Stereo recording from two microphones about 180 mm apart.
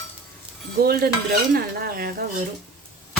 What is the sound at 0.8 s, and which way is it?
Speech, 55° right (ahead or behind).